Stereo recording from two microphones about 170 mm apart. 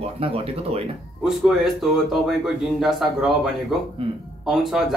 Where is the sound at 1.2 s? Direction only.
Centre (ahead or behind).